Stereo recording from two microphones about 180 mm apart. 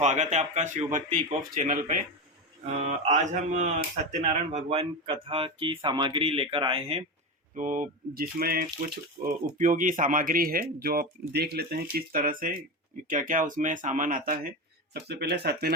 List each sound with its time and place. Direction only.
0.0 s speech: 40° right (ahead or behind)
7.5 s speech: 45° right (ahead or behind)
14.9 s speech: 65° right (ahead or behind)